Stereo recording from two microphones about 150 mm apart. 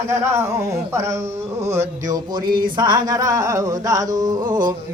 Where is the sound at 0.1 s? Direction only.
20° right (ahead or behind).